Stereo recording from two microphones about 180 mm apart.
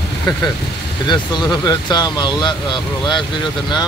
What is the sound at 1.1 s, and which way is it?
Speech, 25° left (ahead or behind).